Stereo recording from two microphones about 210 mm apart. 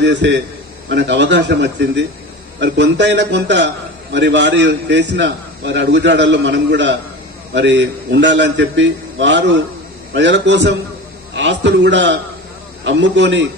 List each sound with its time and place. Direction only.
0.0 s a man's voice: 60° right (ahead or behind)